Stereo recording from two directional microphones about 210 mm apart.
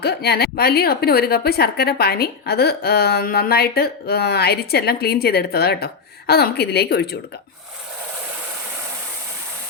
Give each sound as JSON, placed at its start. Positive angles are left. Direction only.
{"t": 0.0, "sound": "a woman's voice", "side_deg": 50}